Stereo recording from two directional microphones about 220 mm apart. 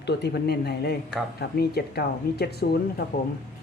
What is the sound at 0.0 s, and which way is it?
Speech, 50° left (ahead or behind).